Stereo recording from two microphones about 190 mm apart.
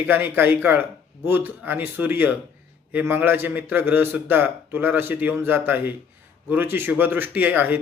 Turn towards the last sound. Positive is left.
turn(degrees=-10)  # may be behind; listen again after turning